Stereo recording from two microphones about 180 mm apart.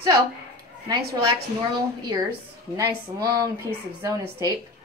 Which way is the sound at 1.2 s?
20° right (ahead or behind).